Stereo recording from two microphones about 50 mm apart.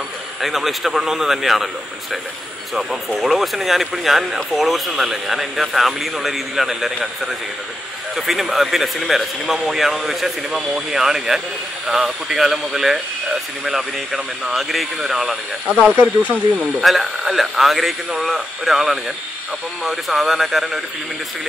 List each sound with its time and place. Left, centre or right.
0.4 s speech: centre
2.7 s speech: centre
8.3 s speech: centre
15.9 s speech: right
16.5 s speech: centre